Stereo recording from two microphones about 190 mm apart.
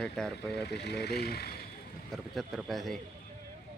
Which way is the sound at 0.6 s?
60° left (ahead or behind).